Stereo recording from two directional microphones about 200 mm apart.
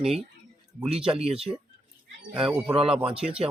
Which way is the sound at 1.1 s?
30° right (ahead or behind).